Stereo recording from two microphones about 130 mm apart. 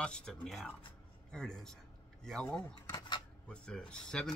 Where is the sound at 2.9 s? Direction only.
30° left (ahead or behind).